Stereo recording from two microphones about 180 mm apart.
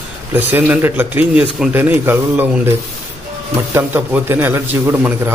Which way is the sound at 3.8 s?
15° right (ahead or behind).